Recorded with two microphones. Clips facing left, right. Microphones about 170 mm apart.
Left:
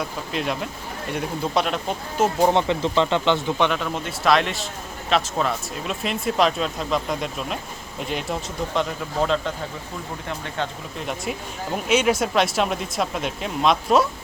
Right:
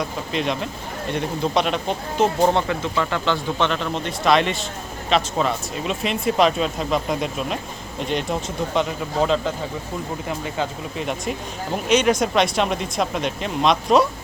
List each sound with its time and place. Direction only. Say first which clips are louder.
0.0 s speech: right 2 dB; 5° left (ahead or behind); by 3.7 s 20° left (ahead or behind)
3.7 s speech: right 1 dB; 5° left (ahead or behind)